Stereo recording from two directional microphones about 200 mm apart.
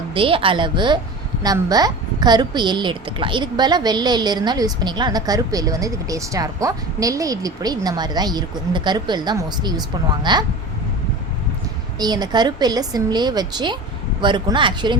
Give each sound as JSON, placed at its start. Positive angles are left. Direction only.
{"t": 0.1, "sound": "a woman's voice", "side_deg": -25}
{"t": 11.9, "sound": "a woman's voice", "side_deg": -20}